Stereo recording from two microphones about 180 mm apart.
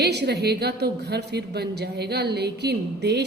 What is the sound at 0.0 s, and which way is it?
A woman's voice, 65° right (ahead or behind).